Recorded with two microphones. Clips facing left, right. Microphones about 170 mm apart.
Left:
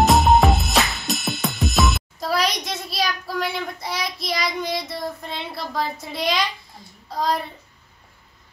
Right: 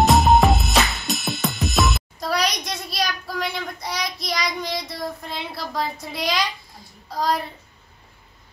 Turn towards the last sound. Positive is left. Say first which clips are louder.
# even
turn(degrees=0)  # may be behind; listen again after turning